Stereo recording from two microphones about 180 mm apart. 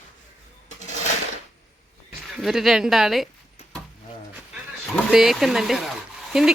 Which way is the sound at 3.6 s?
40° left (ahead or behind).